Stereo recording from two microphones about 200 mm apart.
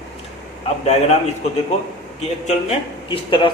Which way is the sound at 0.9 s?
35° left (ahead or behind).